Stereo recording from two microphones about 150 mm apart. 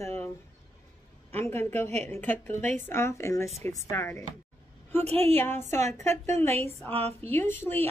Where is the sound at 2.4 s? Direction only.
50° right (ahead or behind).